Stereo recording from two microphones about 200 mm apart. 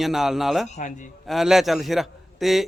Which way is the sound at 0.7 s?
40° left (ahead or behind).